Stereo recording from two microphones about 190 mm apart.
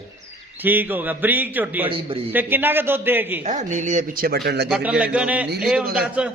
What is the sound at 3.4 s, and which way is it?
Speech, 40° right (ahead or behind).